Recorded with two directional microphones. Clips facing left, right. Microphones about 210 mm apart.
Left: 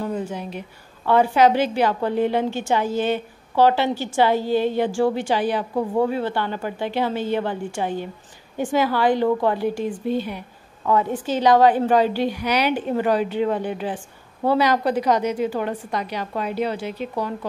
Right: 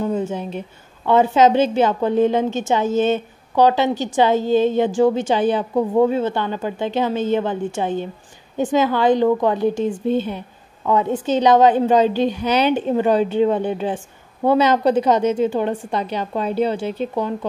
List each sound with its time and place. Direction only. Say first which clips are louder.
0.0 s a woman's voice: right 5 dB; 25° right (ahead or behind)